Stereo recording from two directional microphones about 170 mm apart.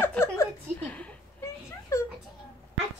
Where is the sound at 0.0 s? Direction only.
15° left (ahead or behind).